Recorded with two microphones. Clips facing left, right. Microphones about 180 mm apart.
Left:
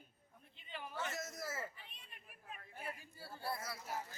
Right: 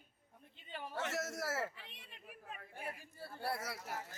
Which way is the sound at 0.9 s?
80° right.